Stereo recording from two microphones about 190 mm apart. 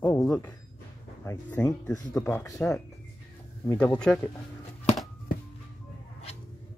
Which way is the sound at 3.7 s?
5° left (ahead or behind).